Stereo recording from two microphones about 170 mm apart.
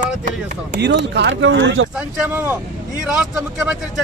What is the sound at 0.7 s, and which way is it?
Speech, 85° right.